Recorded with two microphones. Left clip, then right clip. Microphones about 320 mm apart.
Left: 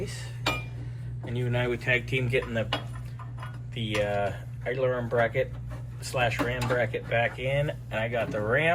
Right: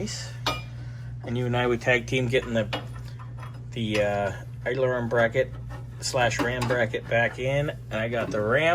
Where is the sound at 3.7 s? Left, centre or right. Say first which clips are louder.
Right 3 dB; centre.